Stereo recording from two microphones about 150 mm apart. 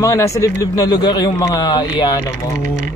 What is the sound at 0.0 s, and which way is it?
Speech, 20° left (ahead or behind).